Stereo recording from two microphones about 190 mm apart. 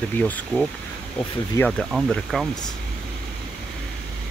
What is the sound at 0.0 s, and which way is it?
Speech, 10° left (ahead or behind).